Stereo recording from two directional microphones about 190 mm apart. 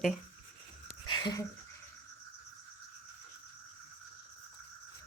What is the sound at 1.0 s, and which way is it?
Speech, 20° left (ahead or behind).